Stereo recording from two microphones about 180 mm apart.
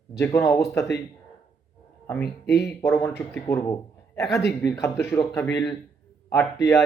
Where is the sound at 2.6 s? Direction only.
15° left (ahead or behind).